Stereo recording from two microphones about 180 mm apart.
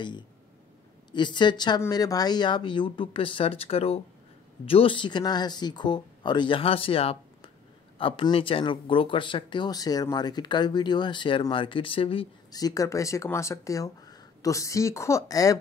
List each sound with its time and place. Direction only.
1.1 s speech: 25° left (ahead or behind)